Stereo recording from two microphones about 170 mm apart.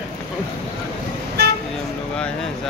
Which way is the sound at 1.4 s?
75° right (ahead or behind).